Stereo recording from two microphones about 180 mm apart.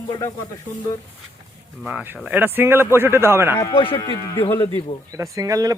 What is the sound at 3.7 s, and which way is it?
Speech, 30° left (ahead or behind).